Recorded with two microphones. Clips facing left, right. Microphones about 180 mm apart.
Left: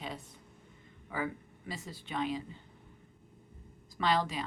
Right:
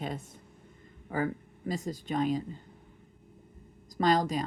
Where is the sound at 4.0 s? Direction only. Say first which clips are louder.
Right 5 dB; 45° right (ahead or behind).